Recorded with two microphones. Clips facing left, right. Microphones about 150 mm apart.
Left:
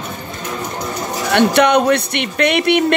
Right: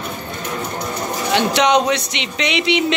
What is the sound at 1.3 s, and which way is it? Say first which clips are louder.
Speech: left 3 dB; 55° left (ahead or behind).